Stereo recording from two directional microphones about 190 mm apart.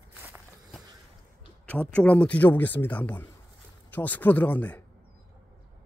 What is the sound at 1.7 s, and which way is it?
Speech, 5° left (ahead or behind).